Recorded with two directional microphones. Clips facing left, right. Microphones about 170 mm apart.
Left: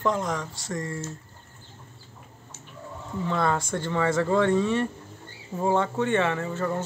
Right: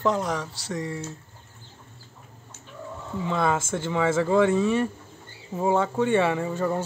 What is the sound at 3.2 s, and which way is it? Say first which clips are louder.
Speech: right 1 dB; 5° right (ahead or behind).